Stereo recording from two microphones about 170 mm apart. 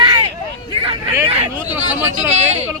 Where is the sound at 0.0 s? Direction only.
25° right (ahead or behind).